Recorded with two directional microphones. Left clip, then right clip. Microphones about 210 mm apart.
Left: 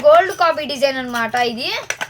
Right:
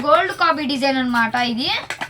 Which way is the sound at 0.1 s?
60° left (ahead or behind).